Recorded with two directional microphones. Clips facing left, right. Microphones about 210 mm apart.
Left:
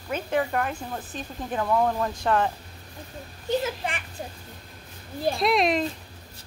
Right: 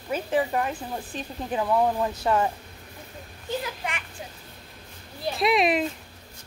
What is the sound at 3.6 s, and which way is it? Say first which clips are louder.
Speech: left 4 dB; 30° left (ahead or behind).